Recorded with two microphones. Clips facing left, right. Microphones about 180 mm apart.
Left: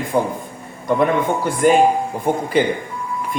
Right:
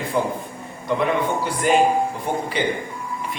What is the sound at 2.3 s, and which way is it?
Speech, 50° left (ahead or behind).